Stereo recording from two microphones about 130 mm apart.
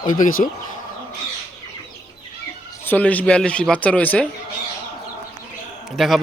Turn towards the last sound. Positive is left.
turn(degrees=0)  # may be behind; listen again after turning